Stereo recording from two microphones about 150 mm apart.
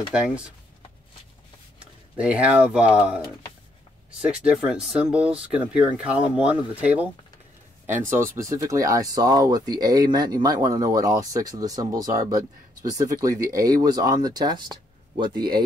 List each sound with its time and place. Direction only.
0.1 s speech: 5° right (ahead or behind)
2.1 s speech: 10° right (ahead or behind)
4.3 s speech: 5° right (ahead or behind); by 15.6 s 30° right (ahead or behind)